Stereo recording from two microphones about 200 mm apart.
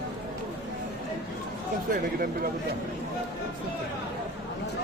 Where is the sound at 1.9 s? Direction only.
45° right (ahead or behind).